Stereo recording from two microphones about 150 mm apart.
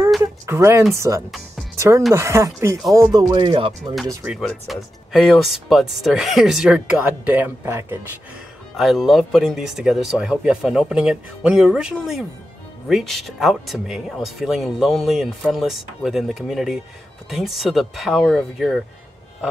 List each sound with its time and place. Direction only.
0.2 s a sound: 15° right (ahead or behind)
0.9 s speech: 20° right (ahead or behind)
4.3 s speech: centre (ahead or behind); by 8.0 s 15° right (ahead or behind)
8.7 s speech: centre (ahead or behind)